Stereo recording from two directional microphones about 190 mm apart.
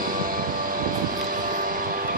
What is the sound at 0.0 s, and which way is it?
Vehicle, 45° right (ahead or behind).